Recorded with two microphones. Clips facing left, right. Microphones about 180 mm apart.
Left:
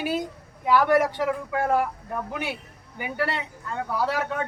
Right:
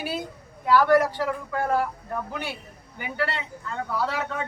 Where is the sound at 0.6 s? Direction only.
20° left (ahead or behind).